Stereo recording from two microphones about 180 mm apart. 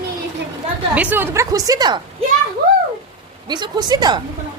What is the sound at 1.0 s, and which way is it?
A woman's voice, 10° right (ahead or behind).